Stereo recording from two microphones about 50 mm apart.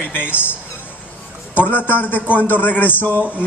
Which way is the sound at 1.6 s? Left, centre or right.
Left.